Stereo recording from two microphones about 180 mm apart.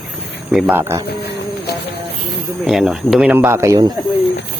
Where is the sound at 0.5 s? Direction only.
10° right (ahead or behind).